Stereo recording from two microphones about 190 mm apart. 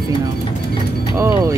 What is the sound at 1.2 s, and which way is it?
Speech, 15° right (ahead or behind).